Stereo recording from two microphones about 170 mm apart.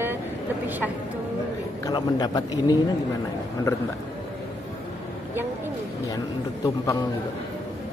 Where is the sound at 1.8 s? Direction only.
20° left (ahead or behind).